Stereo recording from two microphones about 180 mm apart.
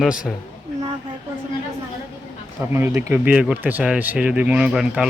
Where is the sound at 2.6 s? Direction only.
15° right (ahead or behind).